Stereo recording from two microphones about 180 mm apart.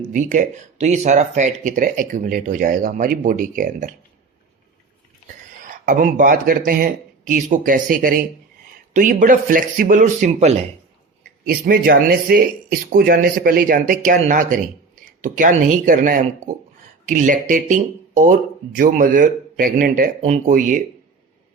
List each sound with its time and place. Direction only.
0.1 s speech: 45° right (ahead or behind)
5.6 s speech: 50° right (ahead or behind)
11.4 s speech: 55° right (ahead or behind)